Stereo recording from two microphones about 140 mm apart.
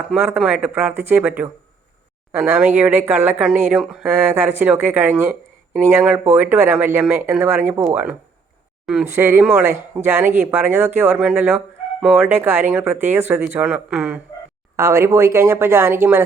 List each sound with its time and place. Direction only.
0.2 s speech: 15° right (ahead or behind)
14.8 s speech: 20° right (ahead or behind)